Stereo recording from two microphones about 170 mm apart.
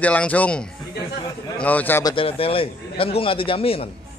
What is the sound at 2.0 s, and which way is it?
A man's voice, 30° left (ahead or behind).